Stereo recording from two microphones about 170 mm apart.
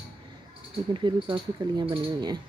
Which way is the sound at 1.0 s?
30° right (ahead or behind).